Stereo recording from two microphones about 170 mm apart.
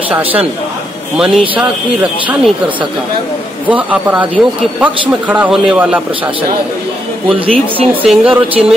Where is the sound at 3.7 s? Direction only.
10° right (ahead or behind).